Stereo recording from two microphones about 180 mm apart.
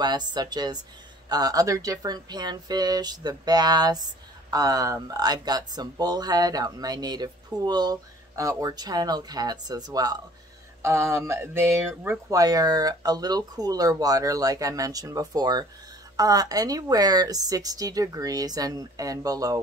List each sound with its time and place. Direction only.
0.0 s speech: 25° right (ahead or behind)